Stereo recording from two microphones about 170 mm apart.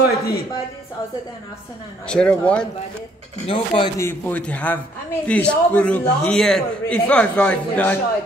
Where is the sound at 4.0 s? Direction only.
15° left (ahead or behind).